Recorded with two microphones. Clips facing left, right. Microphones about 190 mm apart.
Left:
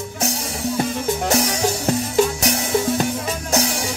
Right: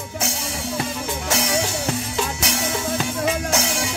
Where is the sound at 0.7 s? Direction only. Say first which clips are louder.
Left 6 dB; 40° left (ahead or behind).